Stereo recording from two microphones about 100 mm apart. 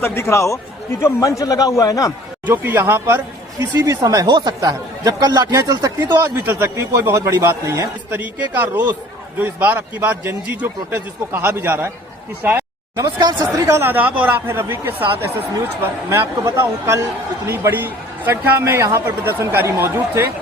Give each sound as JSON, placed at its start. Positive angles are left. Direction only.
{"t": 0.0, "sound": "a man's voice", "side_deg": 25}
{"t": 2.5, "sound": "a man's voice", "side_deg": -25}
{"t": 3.8, "sound": "a man's voice", "side_deg": -35}
{"t": 6.4, "sound": "a man's voice", "side_deg": -20}
{"t": 13.1, "sound": "speech", "side_deg": -45}
{"t": 13.7, "sound": "a man's voice", "side_deg": -25}